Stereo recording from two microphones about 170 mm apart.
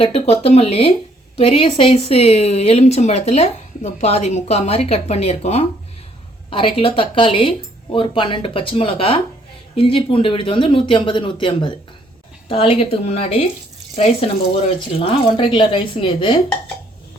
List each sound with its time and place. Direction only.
0.0 s a woman's voice: 35° left (ahead or behind)
14.9 s a woman's voice: 35° left (ahead or behind)